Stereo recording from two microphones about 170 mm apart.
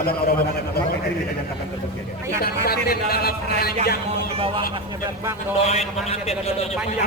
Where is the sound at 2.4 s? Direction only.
65° left (ahead or behind).